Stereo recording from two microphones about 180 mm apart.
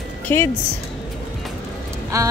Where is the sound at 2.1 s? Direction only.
15° right (ahead or behind).